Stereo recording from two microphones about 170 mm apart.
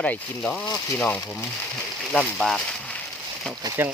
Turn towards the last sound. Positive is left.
turn(degrees=-10)  # may be behind; listen again after turning